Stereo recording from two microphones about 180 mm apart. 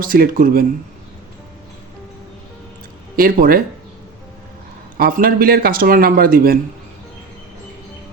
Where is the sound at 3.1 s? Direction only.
50° right (ahead or behind).